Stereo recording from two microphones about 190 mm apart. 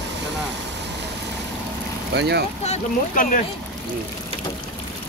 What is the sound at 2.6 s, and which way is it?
Speech, 40° left (ahead or behind).